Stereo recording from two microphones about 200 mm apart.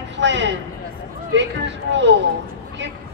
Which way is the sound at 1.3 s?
60° right (ahead or behind).